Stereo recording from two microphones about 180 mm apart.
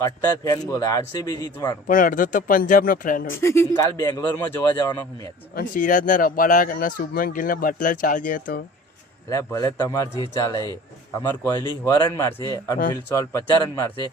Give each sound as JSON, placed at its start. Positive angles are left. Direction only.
{"t": 0.0, "sound": "a man's voice", "side_deg": 20}
{"t": 1.9, "sound": "speech", "side_deg": 50}
{"t": 3.4, "sound": "a man's voice", "side_deg": 15}
{"t": 5.5, "sound": "speech", "side_deg": 45}
{"t": 9.3, "sound": "a man's voice", "side_deg": 15}